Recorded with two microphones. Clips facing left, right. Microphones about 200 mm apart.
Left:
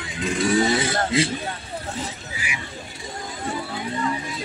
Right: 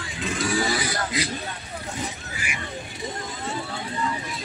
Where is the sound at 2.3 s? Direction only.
50° right (ahead or behind).